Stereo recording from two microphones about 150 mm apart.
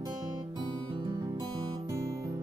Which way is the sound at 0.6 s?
30° right (ahead or behind).